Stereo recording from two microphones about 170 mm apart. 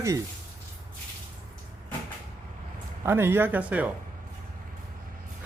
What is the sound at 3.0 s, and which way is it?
Speech, 15° right (ahead or behind).